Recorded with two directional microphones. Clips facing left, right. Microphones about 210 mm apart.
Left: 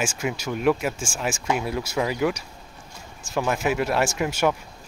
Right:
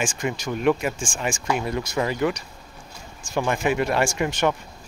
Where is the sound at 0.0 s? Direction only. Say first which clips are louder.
Even; 5° left (ahead or behind).